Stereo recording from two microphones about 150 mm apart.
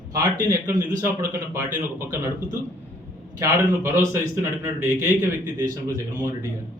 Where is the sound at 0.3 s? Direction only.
25° right (ahead or behind).